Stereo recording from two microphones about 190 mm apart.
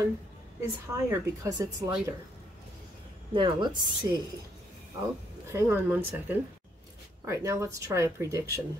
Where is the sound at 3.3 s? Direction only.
25° right (ahead or behind).